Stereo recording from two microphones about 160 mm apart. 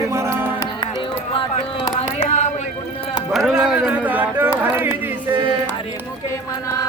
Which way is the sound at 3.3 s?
Centre (ahead or behind).